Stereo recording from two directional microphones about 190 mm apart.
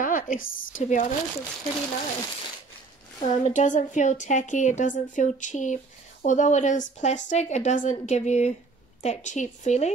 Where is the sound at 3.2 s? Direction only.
40° left (ahead or behind).